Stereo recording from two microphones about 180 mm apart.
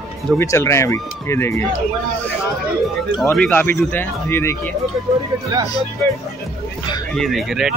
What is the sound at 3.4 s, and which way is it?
Speech, 10° left (ahead or behind).